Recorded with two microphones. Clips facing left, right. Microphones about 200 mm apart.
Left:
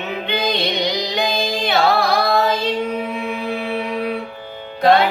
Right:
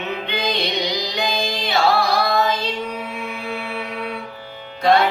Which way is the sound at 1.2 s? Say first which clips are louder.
Left 3 dB; 55° left (ahead or behind).